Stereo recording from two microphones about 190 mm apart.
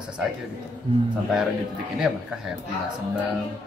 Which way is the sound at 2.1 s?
5° right (ahead or behind).